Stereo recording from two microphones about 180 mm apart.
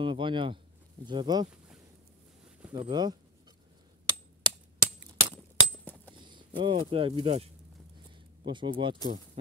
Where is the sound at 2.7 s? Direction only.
25° right (ahead or behind).